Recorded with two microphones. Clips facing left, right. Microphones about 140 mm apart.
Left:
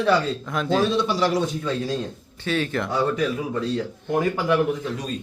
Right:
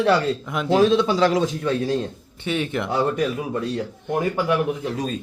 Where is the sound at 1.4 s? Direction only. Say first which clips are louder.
Right 3 dB; 60° right (ahead or behind).